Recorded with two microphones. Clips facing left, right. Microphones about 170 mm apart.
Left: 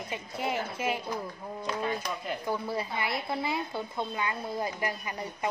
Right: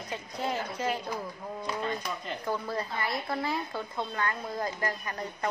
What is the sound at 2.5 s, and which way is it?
A woman's voice, 10° left (ahead or behind).